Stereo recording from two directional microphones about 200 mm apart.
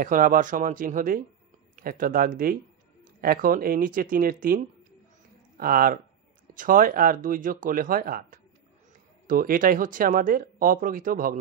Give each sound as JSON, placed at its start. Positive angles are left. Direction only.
{"t": 0.0, "sound": "speech", "side_deg": -45}